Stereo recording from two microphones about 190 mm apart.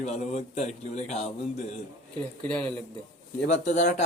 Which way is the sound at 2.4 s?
5° left (ahead or behind).